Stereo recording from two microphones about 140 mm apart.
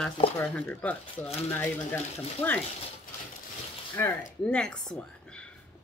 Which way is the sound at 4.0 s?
15° left (ahead or behind).